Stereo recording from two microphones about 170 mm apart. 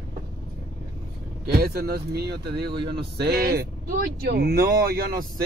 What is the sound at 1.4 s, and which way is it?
Speech, 70° right (ahead or behind).